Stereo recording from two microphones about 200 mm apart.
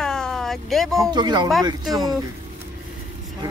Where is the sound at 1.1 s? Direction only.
20° right (ahead or behind).